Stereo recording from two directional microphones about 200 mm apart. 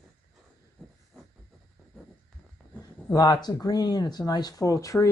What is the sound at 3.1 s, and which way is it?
Speech, 20° left (ahead or behind).